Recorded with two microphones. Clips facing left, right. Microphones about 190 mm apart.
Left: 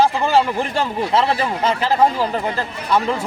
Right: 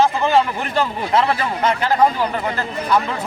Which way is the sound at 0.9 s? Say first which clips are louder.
Left 3 dB; 30° left (ahead or behind).